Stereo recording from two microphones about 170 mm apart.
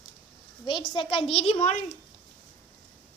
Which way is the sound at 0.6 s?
25° left (ahead or behind).